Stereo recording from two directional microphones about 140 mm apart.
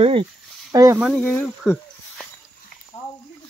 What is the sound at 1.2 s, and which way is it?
Speech, 15° left (ahead or behind).